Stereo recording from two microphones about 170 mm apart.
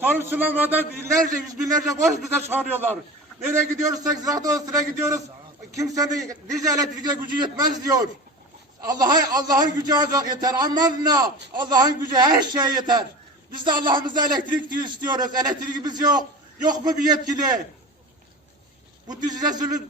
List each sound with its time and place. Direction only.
0.0 s a man's voice: 10° right (ahead or behind)
2.3 s a man's voice: 10° right (ahead or behind)
19.0 s a man's voice: 25° right (ahead or behind)